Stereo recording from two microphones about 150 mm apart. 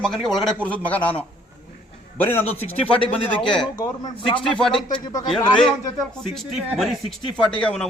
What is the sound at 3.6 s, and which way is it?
Speech, 30° left (ahead or behind).